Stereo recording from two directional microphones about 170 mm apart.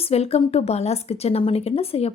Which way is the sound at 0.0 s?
35° left (ahead or behind).